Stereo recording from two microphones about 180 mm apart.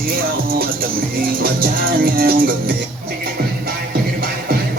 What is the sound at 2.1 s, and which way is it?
Music, 60° right (ahead or behind).